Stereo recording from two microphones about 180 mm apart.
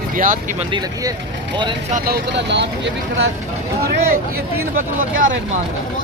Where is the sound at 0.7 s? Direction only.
25° right (ahead or behind).